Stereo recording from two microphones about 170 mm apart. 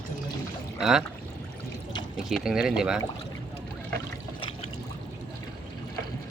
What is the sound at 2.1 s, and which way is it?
Speech, centre (ahead or behind).